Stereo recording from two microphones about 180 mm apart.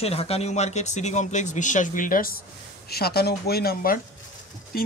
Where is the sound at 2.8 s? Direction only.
60° left (ahead or behind).